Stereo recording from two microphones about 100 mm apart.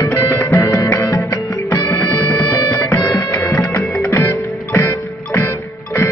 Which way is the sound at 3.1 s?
30° left (ahead or behind).